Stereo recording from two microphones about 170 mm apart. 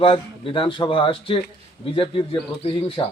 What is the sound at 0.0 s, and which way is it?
Speech, 30° left (ahead or behind).